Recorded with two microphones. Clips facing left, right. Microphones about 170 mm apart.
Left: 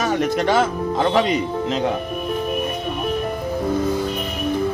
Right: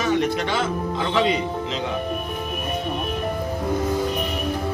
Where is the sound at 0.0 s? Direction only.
45° left (ahead or behind).